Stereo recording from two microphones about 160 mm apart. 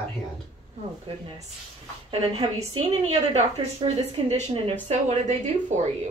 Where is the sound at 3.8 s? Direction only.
30° right (ahead or behind).